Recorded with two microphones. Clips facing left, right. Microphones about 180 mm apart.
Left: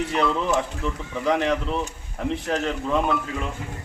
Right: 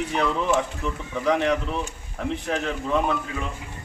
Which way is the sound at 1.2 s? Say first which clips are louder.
Even; centre (ahead or behind).